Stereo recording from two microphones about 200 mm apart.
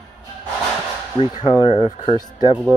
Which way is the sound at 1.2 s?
30° left (ahead or behind).